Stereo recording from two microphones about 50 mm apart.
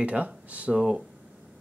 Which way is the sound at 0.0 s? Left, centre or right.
Right.